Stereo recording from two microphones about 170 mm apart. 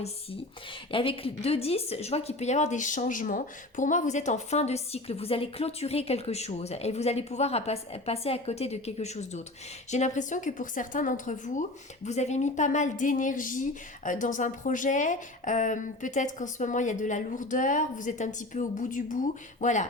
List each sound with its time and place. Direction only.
0.9 s a woman's voice: 30° left (ahead or behind)